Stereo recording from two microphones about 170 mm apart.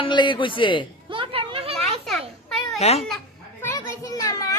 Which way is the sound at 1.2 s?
30° right (ahead or behind).